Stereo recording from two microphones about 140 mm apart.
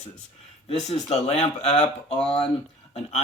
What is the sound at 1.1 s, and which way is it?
Speech, 50° left (ahead or behind).